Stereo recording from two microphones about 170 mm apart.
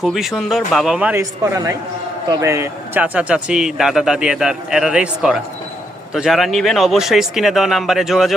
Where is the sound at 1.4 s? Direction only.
20° right (ahead or behind).